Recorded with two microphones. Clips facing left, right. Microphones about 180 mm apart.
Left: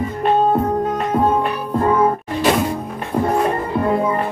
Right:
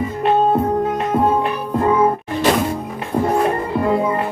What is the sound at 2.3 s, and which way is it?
Music, 10° left (ahead or behind).